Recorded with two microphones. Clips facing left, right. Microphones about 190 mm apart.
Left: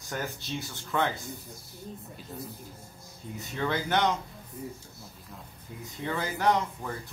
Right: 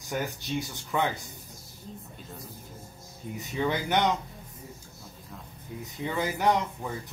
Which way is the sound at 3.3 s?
15° right (ahead or behind).